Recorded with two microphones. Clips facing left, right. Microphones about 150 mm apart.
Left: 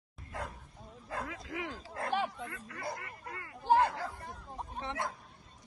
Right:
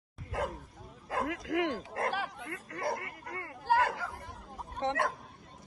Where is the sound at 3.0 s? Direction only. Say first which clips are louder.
Right 3 dB; 60° right (ahead or behind).